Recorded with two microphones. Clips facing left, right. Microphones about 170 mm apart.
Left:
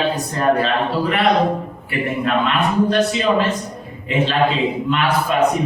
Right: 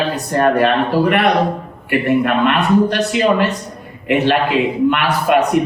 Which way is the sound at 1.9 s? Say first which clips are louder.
Right 6 dB; 65° right (ahead or behind).